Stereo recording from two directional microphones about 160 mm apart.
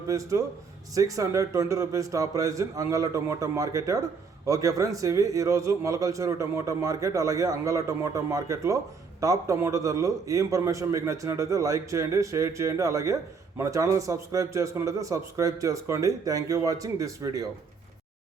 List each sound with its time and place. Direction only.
0.1 s a man's voice: 20° right (ahead or behind)